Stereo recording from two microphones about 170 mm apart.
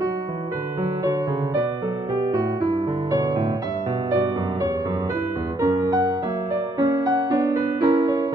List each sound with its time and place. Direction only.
2.1 s music: 20° right (ahead or behind)
5.6 s music: 20° right (ahead or behind)